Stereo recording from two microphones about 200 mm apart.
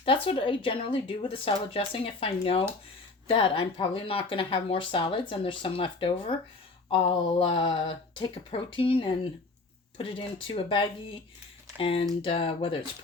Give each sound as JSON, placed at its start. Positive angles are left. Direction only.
{"t": 0.0, "sound": "speech", "side_deg": 25}